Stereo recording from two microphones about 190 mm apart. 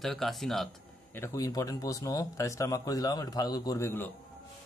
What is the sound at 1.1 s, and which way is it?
Speech, 15° left (ahead or behind).